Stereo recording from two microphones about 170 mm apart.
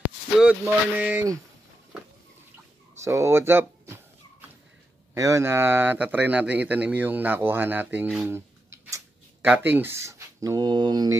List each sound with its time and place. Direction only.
0.7 s a man's voice: 10° right (ahead or behind)
3.0 s speech: 15° right (ahead or behind)
5.1 s a man's voice: 20° right (ahead or behind)